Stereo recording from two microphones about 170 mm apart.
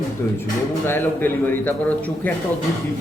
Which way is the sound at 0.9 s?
10° left (ahead or behind).